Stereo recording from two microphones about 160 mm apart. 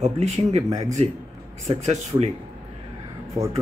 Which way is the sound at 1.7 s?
45° right (ahead or behind).